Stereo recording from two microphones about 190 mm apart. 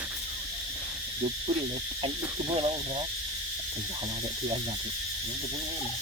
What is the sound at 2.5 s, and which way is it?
Speech, 30° right (ahead or behind).